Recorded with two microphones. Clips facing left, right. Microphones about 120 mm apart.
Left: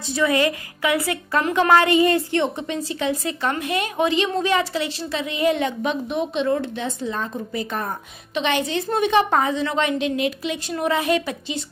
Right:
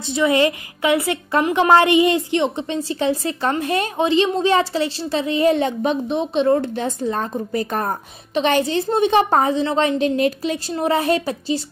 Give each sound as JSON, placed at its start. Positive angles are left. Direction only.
{"t": 0.0, "sound": "a woman's voice", "side_deg": -25}